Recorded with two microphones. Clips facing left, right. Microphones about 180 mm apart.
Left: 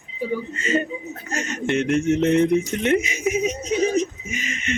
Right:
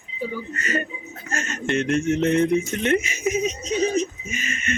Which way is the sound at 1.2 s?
15° left (ahead or behind).